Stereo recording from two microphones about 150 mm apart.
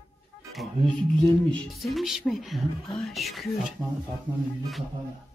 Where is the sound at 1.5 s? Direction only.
Centre (ahead or behind).